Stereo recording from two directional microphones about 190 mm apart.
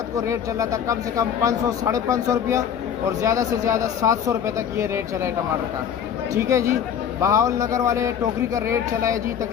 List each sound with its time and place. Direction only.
0.2 s speech: 15° right (ahead or behind)
6.3 s speech: 15° right (ahead or behind)